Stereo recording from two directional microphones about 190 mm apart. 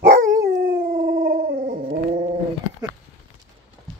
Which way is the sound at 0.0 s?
45° right (ahead or behind).